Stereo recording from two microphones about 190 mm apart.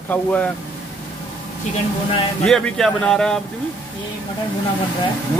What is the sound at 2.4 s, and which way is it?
Speech, centre (ahead or behind).